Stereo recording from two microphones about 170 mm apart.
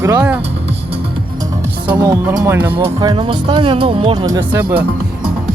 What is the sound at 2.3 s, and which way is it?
Speech, 20° right (ahead or behind).